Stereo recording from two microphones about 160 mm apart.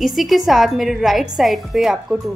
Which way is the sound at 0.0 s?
Centre (ahead or behind).